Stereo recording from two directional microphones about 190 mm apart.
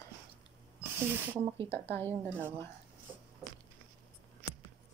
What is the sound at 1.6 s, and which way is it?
Speech, 10° left (ahead or behind).